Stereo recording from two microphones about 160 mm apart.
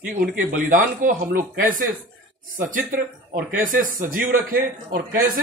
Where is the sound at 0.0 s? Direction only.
60° right (ahead or behind).